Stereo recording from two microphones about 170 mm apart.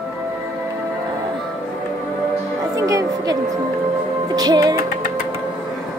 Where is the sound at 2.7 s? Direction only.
20° right (ahead or behind).